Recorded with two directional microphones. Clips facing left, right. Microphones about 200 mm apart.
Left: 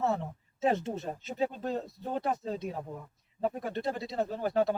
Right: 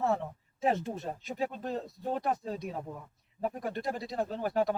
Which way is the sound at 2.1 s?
25° left (ahead or behind).